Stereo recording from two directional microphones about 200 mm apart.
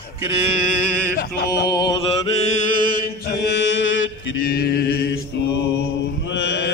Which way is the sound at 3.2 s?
55° left (ahead or behind).